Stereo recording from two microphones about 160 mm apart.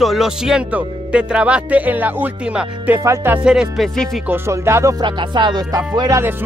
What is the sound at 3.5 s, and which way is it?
Music, 5° right (ahead or behind).